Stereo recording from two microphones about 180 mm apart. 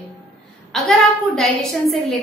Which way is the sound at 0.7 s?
Centre (ahead or behind).